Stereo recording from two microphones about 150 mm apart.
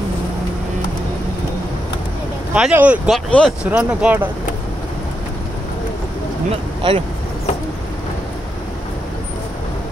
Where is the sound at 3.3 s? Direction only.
5° left (ahead or behind).